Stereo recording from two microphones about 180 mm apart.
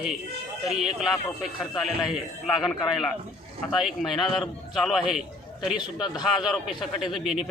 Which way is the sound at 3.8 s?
Centre (ahead or behind).